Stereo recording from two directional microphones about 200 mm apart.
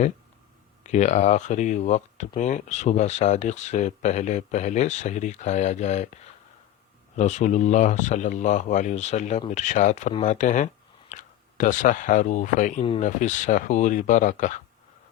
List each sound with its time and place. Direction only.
0.9 s speech: 35° left (ahead or behind)
7.2 s speech: 35° left (ahead or behind)